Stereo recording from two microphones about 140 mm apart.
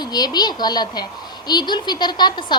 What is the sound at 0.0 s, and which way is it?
A woman's voice, 30° left (ahead or behind).